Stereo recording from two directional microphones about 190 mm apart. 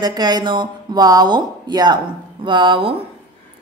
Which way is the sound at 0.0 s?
20° right (ahead or behind).